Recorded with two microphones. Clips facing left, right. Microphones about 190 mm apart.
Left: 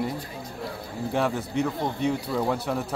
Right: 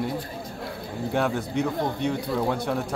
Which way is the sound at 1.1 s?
Centre (ahead or behind).